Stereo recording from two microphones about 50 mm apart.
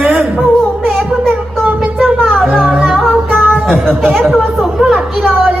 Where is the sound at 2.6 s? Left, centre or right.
Centre.